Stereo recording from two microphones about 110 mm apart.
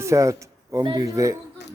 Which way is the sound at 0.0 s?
30° right (ahead or behind).